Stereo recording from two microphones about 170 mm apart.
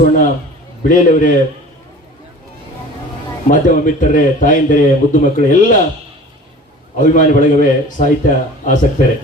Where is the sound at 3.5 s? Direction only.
50° left (ahead or behind).